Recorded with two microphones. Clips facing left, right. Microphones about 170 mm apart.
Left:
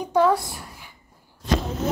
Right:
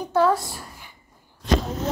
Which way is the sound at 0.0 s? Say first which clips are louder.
Left 1 dB; 10° left (ahead or behind).